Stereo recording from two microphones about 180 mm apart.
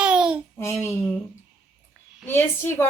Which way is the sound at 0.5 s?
15° left (ahead or behind).